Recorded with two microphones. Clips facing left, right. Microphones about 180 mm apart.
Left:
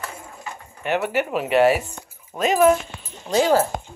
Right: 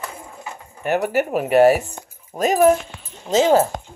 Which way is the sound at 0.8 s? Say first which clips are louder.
Right 3 dB; 45° right (ahead or behind).